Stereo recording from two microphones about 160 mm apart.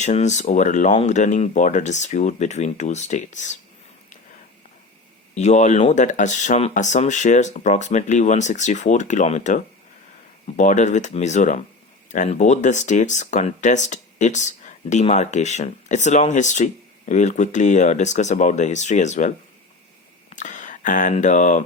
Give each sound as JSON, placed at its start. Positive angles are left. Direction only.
{"t": 0.0, "sound": "speech", "side_deg": 45}
{"t": 5.3, "sound": "speech", "side_deg": 45}
{"t": 10.6, "sound": "speech", "side_deg": 50}
{"t": 20.3, "sound": "speech", "side_deg": 50}